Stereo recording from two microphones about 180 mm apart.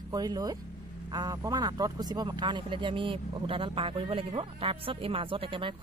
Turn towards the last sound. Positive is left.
turn(degrees=-30)  # may be behind; listen again after turning